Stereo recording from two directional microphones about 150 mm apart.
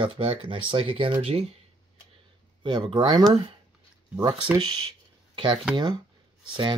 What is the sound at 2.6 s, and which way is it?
Speech, 35° right (ahead or behind).